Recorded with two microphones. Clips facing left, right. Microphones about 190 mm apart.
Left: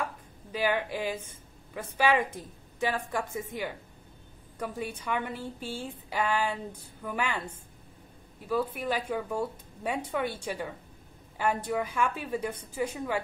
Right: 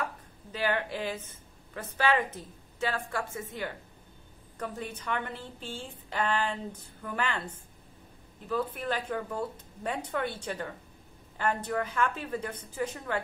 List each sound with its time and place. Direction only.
0.0 s chopping: 10° left (ahead or behind)
1.7 s a woman's voice: 10° left (ahead or behind)